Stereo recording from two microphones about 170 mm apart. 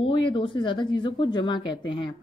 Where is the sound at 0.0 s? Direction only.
30° left (ahead or behind).